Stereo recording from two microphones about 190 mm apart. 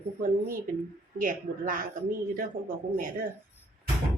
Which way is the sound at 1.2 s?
45° right (ahead or behind).